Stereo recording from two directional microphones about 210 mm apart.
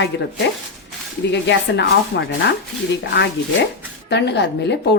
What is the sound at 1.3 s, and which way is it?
Speech, 55° left (ahead or behind).